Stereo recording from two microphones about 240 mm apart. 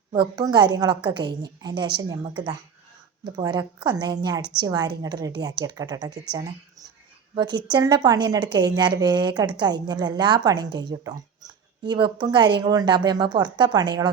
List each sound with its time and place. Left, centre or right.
0.1 s speech: centre
7.3 s speech: centre